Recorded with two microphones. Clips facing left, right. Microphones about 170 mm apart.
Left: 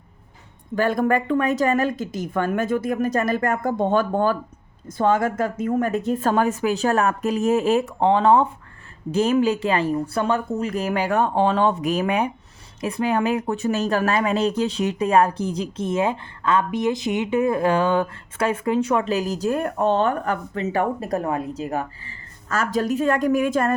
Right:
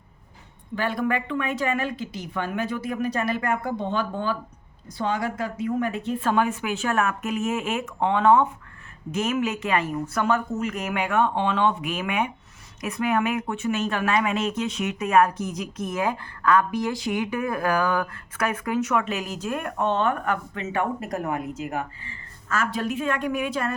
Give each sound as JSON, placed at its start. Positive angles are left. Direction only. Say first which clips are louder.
{"t": 0.8, "sound": "speech", "louder": "left 6 dB", "side_deg": 45}